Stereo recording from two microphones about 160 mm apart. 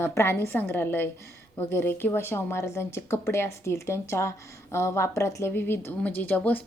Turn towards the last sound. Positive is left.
turn(degrees=10)  # may be behind; listen again after turning